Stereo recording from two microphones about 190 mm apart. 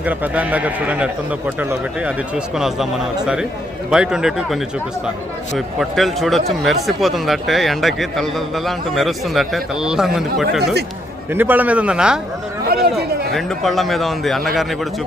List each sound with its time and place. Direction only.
0.0 s a man's voice: 10° right (ahead or behind)
3.8 s a man's voice: 5° right (ahead or behind)
12.6 s chatter: 55° right (ahead or behind)
13.3 s speech: centre (ahead or behind)